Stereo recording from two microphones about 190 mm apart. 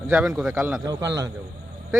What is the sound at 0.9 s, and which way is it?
Speech, 20° right (ahead or behind).